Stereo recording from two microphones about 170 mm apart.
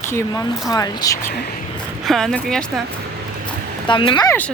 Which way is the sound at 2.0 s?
5° left (ahead or behind).